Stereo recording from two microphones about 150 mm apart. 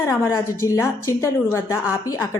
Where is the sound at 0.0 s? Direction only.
15° left (ahead or behind).